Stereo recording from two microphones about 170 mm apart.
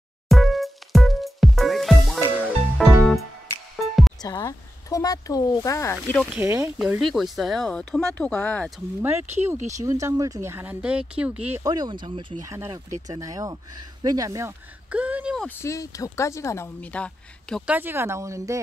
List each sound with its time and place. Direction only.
0.3 s music: centre (ahead or behind)
4.2 s speech: 25° left (ahead or behind)
6.3 s speech: 15° right (ahead or behind)
6.8 s speech: centre (ahead or behind)
9.0 s speech: 15° right (ahead or behind)
11.6 s speech: 25° right (ahead or behind)
14.9 s speech: 10° right (ahead or behind)
15.4 s speech: 15° left (ahead or behind)
17.6 s speech: 10° right (ahead or behind)